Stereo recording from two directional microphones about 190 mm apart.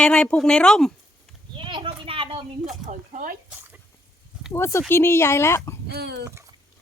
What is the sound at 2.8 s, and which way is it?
Speech, 45° right (ahead or behind).